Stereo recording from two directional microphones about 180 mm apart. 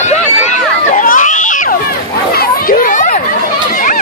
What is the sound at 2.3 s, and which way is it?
Chatter, 50° left (ahead or behind).